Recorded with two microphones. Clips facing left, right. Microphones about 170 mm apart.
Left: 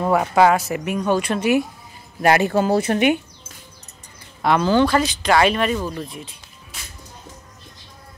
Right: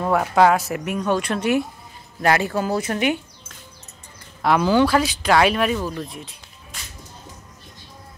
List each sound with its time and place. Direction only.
0.0 s speech: 5° left (ahead or behind)
2.2 s speech: 20° left (ahead or behind)
4.4 s speech: 5° right (ahead or behind)